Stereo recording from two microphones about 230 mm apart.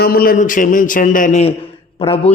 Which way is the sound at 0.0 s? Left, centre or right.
Left.